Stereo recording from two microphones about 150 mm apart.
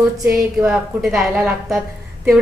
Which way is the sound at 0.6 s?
15° right (ahead or behind).